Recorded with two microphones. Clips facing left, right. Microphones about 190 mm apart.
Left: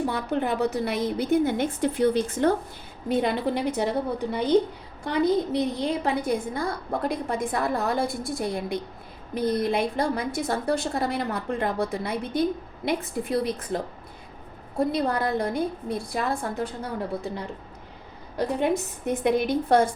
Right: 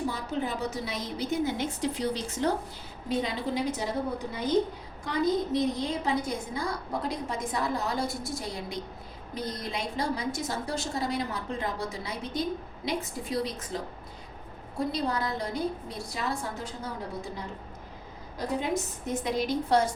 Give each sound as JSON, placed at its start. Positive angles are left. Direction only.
{"t": 0.1, "sound": "a woman's voice", "side_deg": 60}